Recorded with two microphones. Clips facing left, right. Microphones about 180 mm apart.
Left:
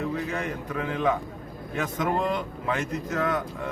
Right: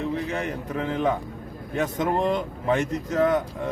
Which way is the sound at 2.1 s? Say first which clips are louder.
Right 3 dB; 25° right (ahead or behind).